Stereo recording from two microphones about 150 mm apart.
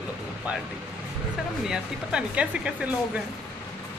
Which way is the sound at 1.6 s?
5° right (ahead or behind).